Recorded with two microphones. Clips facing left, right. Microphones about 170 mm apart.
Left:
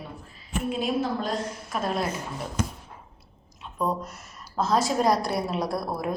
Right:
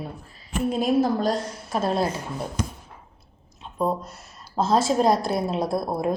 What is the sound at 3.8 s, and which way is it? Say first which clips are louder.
A woman's voice: right 3 dB; 30° right (ahead or behind).